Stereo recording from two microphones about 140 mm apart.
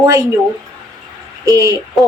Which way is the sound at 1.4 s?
25° right (ahead or behind).